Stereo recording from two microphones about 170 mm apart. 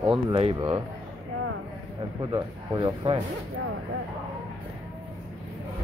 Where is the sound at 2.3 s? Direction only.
30° right (ahead or behind).